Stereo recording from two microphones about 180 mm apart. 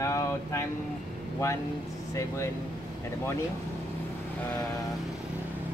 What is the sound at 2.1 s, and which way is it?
Speech, 15° left (ahead or behind).